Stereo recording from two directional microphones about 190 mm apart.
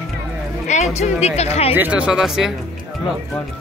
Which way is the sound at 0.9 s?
35° left (ahead or behind).